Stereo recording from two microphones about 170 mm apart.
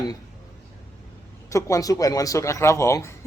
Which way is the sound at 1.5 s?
20° left (ahead or behind).